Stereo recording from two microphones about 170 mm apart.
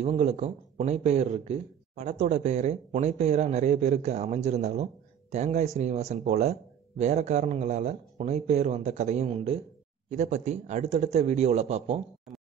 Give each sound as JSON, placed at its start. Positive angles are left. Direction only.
{"t": 0.0, "sound": "speech", "side_deg": -40}